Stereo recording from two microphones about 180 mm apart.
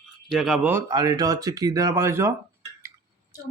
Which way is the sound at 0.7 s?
15° right (ahead or behind).